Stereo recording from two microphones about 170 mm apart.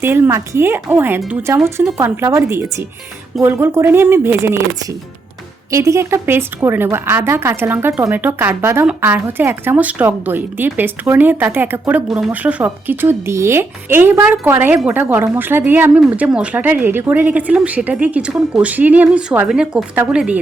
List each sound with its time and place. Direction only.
0.0 s a woman's voice: 15° right (ahead or behind)
5.7 s a woman's voice: 15° right (ahead or behind)